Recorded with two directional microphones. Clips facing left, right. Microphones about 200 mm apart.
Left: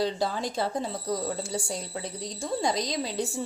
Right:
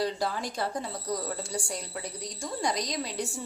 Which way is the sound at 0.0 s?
25° left (ahead or behind).